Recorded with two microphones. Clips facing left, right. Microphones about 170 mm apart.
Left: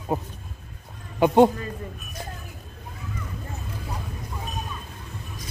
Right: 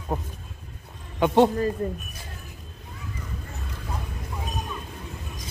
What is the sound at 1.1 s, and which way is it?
Speech, 5° left (ahead or behind).